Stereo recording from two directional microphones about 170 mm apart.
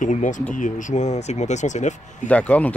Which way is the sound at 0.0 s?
45° left (ahead or behind).